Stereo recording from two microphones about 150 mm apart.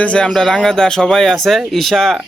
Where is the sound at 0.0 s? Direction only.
5° left (ahead or behind).